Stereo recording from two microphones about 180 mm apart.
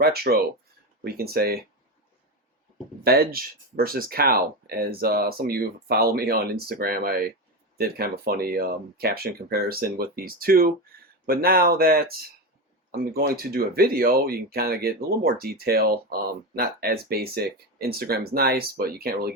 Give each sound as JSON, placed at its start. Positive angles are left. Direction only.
{"t": 0.0, "sound": "speech", "side_deg": -60}
{"t": 3.0, "sound": "speech", "side_deg": -60}